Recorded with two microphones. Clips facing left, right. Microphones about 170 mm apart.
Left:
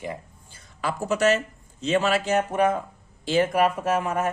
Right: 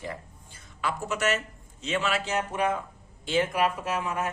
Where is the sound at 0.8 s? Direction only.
35° left (ahead or behind).